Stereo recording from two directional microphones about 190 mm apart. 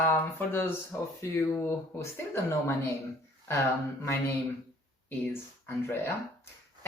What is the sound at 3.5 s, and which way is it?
Speech, 15° left (ahead or behind).